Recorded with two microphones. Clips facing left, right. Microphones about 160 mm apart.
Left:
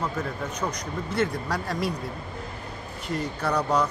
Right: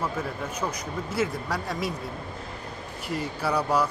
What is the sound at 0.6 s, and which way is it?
Speech, 5° right (ahead or behind).